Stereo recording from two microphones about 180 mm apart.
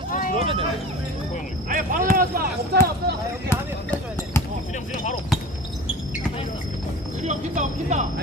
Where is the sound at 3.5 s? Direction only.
15° left (ahead or behind).